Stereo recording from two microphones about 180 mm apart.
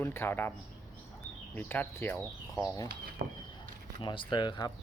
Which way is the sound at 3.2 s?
50° right (ahead or behind).